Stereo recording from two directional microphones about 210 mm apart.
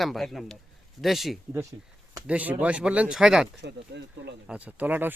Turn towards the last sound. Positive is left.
turn(degrees=-10)  # may be behind; listen again after turning